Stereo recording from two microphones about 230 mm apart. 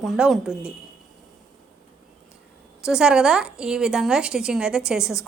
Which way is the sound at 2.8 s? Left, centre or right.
Centre.